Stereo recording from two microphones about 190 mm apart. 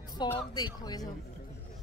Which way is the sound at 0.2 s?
20° left (ahead or behind).